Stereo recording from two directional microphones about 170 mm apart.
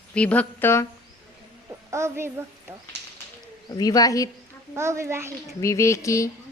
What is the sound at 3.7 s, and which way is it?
Speech, 20° left (ahead or behind).